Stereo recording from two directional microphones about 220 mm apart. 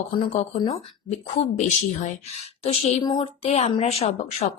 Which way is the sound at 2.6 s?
25° left (ahead or behind).